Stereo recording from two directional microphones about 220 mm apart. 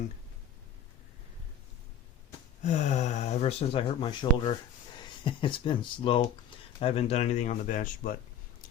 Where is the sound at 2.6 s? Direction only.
30° left (ahead or behind).